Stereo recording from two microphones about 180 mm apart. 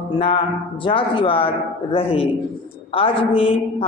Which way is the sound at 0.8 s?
30° left (ahead or behind).